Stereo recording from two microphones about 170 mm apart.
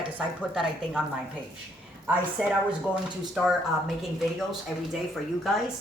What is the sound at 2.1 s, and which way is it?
Speech, 5° right (ahead or behind).